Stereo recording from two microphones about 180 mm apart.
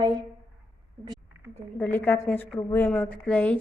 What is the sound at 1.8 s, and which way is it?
A woman's voice, 10° left (ahead or behind).